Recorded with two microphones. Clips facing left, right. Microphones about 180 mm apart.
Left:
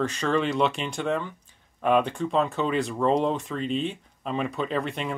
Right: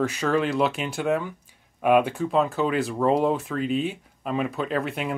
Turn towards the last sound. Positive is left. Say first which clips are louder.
# right 1 dB
turn(degrees=-5)  # may be behind; listen again after turning